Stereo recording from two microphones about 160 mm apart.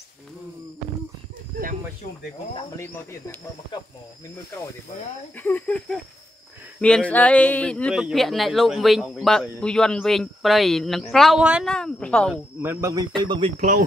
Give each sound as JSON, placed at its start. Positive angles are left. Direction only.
{"t": 2.7, "sound": "speech", "side_deg": 15}
{"t": 5.3, "sound": "speech", "side_deg": 10}
{"t": 11.7, "sound": "speech", "side_deg": 5}
{"t": 12.6, "sound": "speech", "side_deg": -20}
{"t": 13.6, "sound": "speech", "side_deg": -55}